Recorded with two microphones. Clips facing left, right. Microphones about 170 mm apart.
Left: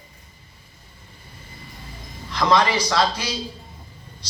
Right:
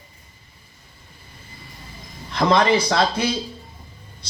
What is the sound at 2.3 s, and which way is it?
A man's voice, 55° right (ahead or behind).